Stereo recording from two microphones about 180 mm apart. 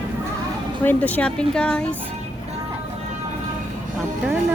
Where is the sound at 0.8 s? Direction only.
10° left (ahead or behind).